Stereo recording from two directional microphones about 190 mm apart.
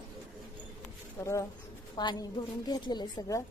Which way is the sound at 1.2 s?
15° left (ahead or behind).